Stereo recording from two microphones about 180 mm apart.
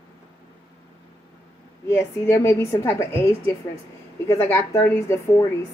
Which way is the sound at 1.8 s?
15° left (ahead or behind).